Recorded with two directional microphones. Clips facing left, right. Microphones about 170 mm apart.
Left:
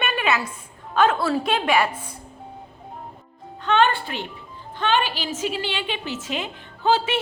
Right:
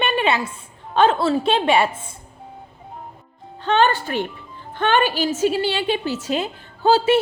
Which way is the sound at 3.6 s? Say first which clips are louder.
Right 2 dB; 35° right (ahead or behind).